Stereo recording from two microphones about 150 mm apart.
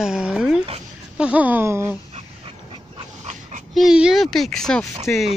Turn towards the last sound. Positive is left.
turn(degrees=10)  # may be behind; listen again after turning